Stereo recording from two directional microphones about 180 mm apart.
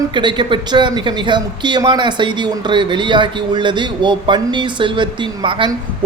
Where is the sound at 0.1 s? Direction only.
25° right (ahead or behind).